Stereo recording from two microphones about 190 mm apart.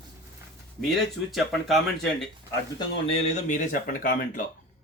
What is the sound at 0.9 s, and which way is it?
Speech, centre (ahead or behind).